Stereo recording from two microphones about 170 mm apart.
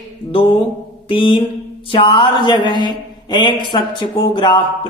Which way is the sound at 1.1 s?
30° left (ahead or behind).